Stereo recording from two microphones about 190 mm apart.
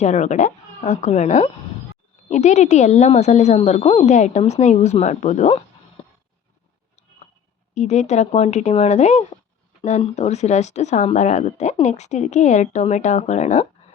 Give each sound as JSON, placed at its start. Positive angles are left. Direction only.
{"t": 0.0, "sound": "speech", "side_deg": 40}
{"t": 7.8, "sound": "speech", "side_deg": 35}